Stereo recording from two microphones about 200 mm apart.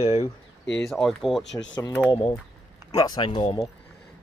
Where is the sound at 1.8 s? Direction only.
15° left (ahead or behind).